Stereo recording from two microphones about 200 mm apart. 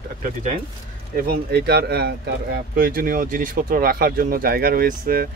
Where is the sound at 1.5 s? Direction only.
55° right (ahead or behind).